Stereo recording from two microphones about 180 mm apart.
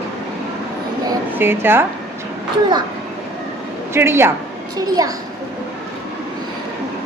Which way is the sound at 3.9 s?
15° right (ahead or behind).